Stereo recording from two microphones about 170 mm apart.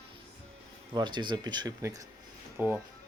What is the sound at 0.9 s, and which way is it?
A man's voice, 25° right (ahead or behind).